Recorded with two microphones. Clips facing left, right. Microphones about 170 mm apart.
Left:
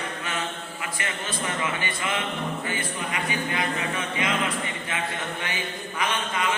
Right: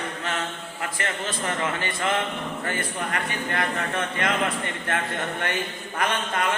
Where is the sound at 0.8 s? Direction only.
50° right (ahead or behind).